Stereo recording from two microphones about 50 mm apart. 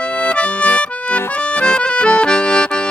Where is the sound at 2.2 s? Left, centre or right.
Left.